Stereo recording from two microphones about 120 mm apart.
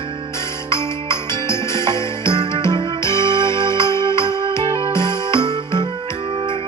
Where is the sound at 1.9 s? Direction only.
25° left (ahead or behind).